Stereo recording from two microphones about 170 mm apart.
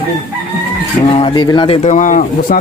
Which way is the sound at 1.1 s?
30° left (ahead or behind).